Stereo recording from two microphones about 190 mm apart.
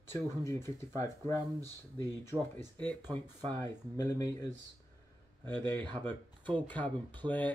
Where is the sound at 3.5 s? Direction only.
15° left (ahead or behind).